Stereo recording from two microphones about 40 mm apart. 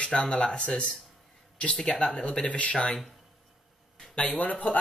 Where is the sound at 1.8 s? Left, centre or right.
Left.